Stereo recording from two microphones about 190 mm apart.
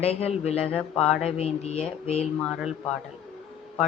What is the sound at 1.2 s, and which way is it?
Speech, 35° left (ahead or behind).